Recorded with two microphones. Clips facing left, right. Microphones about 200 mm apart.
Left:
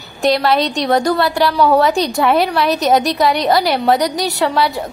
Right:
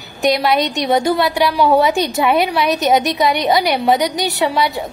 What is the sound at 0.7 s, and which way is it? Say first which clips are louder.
Speech: left 1 dB; 20° right (ahead or behind).